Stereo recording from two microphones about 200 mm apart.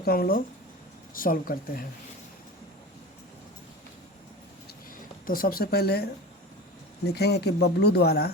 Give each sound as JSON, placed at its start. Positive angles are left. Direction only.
{"t": 0.0, "sound": "speech", "side_deg": 50}
{"t": 5.2, "sound": "speech", "side_deg": 45}